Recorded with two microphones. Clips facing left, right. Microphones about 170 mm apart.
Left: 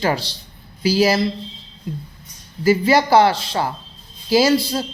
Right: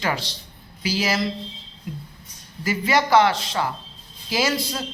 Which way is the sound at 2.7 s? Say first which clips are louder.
Left 6 dB; 35° left (ahead or behind).